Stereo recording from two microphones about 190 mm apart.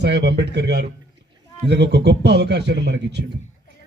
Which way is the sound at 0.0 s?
65° right (ahead or behind).